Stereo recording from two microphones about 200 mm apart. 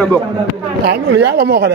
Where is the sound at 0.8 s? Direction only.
55° right (ahead or behind).